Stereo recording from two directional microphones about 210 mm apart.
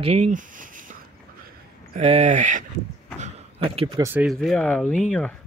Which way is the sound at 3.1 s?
30° right (ahead or behind).